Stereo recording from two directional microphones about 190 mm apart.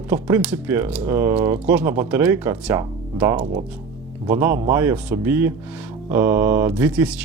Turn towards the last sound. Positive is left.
turn(degrees=-5)  # may be behind; listen again after turning